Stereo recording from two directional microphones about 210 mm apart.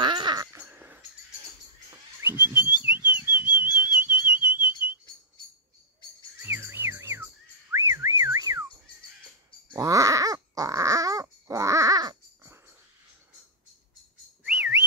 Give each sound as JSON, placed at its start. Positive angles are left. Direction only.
{"t": 0.0, "sound": "a sound", "side_deg": -20}
{"t": 1.9, "sound": "whistling", "side_deg": -10}
{"t": 4.0, "sound": "whistle", "side_deg": -5}
{"t": 6.4, "sound": "music", "side_deg": -10}
{"t": 7.7, "sound": "whistling", "side_deg": -15}
{"t": 9.7, "sound": "a sound", "side_deg": -15}
{"t": 14.4, "sound": "whistling", "side_deg": -5}